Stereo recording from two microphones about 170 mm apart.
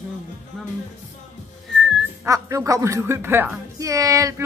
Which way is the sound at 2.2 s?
20° right (ahead or behind).